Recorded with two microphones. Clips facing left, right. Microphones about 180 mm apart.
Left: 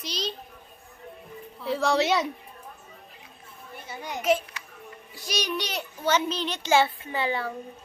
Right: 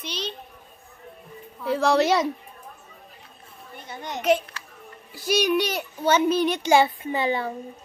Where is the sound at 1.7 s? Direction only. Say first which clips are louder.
Right 4 dB; centre (ahead or behind).